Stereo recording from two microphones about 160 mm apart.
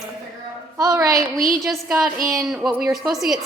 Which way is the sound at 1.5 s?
Centre (ahead or behind).